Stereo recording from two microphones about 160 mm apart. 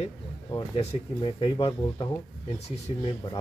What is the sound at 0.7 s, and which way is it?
Speech, 40° left (ahead or behind).